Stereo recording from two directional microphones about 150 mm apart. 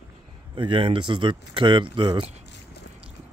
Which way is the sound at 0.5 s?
35° right (ahead or behind).